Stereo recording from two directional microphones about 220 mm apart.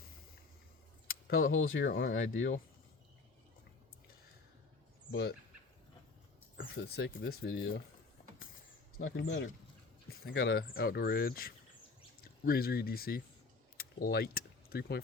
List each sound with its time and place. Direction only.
1.4 s speech: 65° left (ahead or behind)
1.9 s speech: 45° left (ahead or behind)
2.2 s speech: 60° left (ahead or behind)
6.6 s speech: 55° left (ahead or behind)
9.0 s speech: 60° left (ahead or behind)